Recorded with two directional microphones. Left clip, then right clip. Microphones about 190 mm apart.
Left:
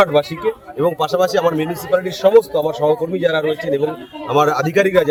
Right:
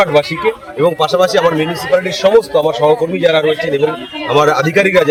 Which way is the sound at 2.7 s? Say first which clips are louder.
Right 5 dB; 40° left (ahead or behind).